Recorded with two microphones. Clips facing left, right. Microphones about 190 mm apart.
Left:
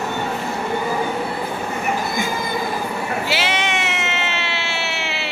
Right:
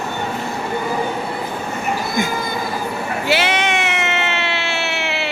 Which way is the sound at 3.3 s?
55° right (ahead or behind).